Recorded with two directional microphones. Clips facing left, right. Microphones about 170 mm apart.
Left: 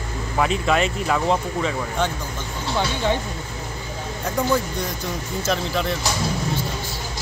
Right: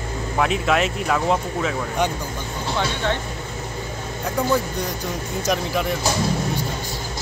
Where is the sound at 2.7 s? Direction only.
10° left (ahead or behind).